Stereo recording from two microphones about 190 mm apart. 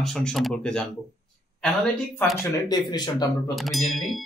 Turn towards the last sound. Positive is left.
turn(degrees=0)  # may be behind; listen again after turning